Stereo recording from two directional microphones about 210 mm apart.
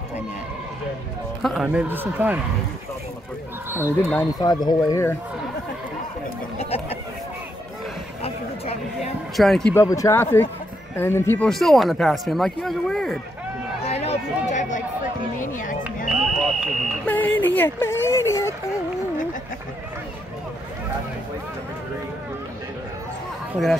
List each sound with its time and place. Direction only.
1.4 s a man's voice: centre (ahead or behind)
4.1 s speech: 15° left (ahead or behind)
6.6 s chatter: 30° left (ahead or behind)
8.2 s a sound: 30° left (ahead or behind)
9.4 s speech: centre (ahead or behind)
9.8 s speech: 15° left (ahead or behind)
13.8 s a sound: 30° left (ahead or behind)
16.1 s a sound: centre (ahead or behind)
23.5 s speech: centre (ahead or behind)